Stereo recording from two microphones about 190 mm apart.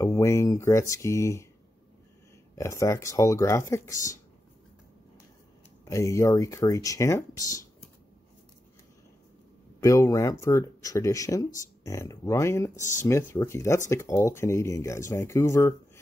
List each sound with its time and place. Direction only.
0.0 s speech: 15° left (ahead or behind)
2.5 s speech: 15° left (ahead or behind)
5.9 s speech: 15° left (ahead or behind)
9.8 s speech: 15° left (ahead or behind)